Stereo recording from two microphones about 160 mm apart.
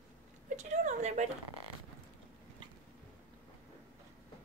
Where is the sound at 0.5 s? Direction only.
50° right (ahead or behind).